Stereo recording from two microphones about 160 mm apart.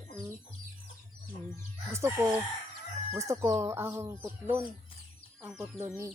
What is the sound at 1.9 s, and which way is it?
Speech, 15° right (ahead or behind).